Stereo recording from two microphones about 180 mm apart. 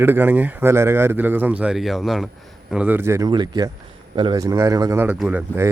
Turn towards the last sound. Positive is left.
turn(degrees=-10)  # may be behind; listen again after turning